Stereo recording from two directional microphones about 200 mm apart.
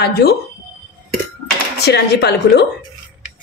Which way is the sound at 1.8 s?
55° left (ahead or behind).